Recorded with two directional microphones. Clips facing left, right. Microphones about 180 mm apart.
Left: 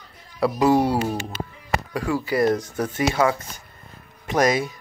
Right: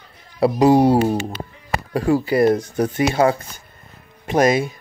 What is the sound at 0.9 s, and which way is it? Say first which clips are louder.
Speech: right 6 dB; 25° right (ahead or behind).